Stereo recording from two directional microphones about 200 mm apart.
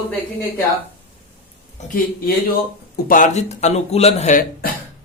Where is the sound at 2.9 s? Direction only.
40° left (ahead or behind).